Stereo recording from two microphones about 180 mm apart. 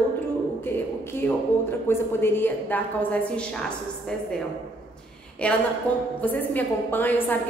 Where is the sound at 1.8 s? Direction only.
10° left (ahead or behind).